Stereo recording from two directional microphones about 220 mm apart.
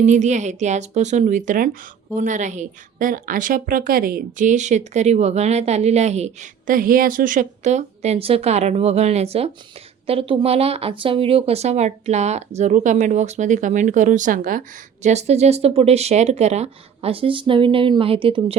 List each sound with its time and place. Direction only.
0.0 s a woman's voice: 35° right (ahead or behind)